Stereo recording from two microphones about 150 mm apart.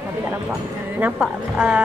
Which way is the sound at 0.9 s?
10° right (ahead or behind).